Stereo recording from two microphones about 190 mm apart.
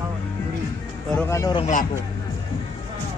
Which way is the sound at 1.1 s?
15° left (ahead or behind).